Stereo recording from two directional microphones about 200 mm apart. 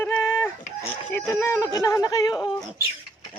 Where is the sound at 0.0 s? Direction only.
10° left (ahead or behind).